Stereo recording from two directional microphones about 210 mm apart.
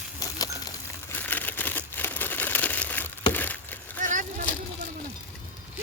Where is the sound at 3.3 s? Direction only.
10° left (ahead or behind).